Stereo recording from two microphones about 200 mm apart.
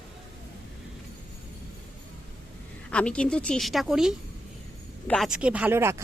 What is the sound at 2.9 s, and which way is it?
A woman's voice, 5° left (ahead or behind).